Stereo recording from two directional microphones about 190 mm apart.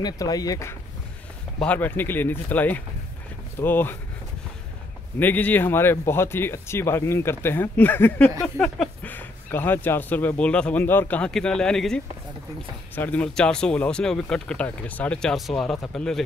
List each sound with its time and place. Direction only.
0.0 s speech: 20° left (ahead or behind)
5.2 s speech: 10° left (ahead or behind)